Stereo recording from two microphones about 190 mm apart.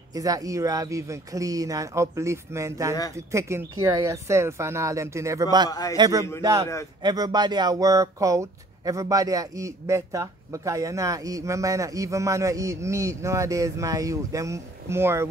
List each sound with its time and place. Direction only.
0.1 s speech: 20° right (ahead or behind)
5.7 s a man's voice: 20° left (ahead or behind)
5.9 s speech: 20° right (ahead or behind)